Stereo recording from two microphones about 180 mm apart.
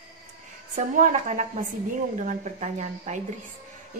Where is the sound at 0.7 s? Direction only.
45° right (ahead or behind).